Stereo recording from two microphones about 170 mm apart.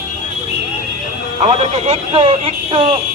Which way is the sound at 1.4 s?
40° right (ahead or behind).